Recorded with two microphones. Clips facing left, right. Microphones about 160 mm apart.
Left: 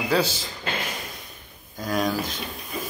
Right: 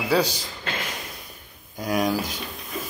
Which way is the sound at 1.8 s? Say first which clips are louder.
Right 1 dB; 15° right (ahead or behind).